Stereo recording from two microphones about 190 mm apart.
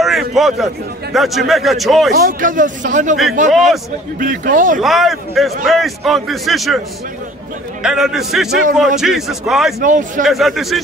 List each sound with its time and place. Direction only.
0.0 s a sound: centre (ahead or behind)
1.1 s a man's voice: centre (ahead or behind)
2.1 s speech: 45° right (ahead or behind)
3.5 s a man's voice: centre (ahead or behind)
4.2 s speech: 45° right (ahead or behind)
4.8 s a man's voice: centre (ahead or behind)
7.8 s a man's voice: 5° right (ahead or behind)
9.8 s speech: 45° right (ahead or behind)
10.2 s a man's voice: centre (ahead or behind)